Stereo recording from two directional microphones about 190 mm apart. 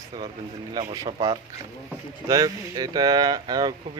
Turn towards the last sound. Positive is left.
turn(degrees=-20)  # may be behind; listen again after turning